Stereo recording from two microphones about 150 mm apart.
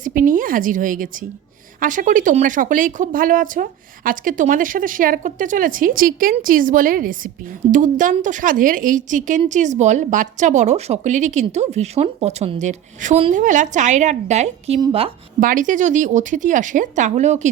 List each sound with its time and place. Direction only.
0.0 s a woman's voice: 65° right (ahead or behind); by 14.8 s 50° right (ahead or behind)
15.4 s speech: 65° right (ahead or behind)